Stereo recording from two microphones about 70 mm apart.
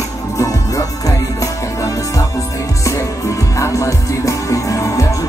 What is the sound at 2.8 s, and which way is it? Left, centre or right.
Music, left.